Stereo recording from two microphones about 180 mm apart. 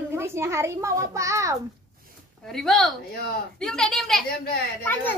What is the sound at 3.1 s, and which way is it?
Speech, 60° left (ahead or behind).